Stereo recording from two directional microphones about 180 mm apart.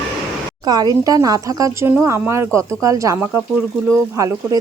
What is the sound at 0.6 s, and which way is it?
Speech, 20° right (ahead or behind).